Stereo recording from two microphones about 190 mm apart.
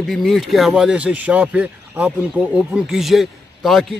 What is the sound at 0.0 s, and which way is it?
Speech, centre (ahead or behind).